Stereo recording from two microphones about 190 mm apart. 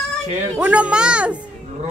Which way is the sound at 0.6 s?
5° right (ahead or behind).